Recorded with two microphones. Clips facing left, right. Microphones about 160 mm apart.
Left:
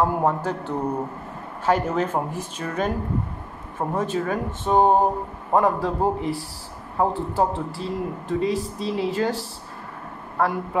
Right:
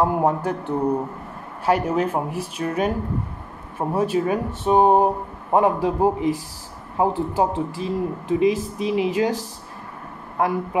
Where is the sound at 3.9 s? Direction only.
10° right (ahead or behind).